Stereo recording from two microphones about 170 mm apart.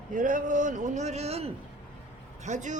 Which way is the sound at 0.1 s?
50° right (ahead or behind).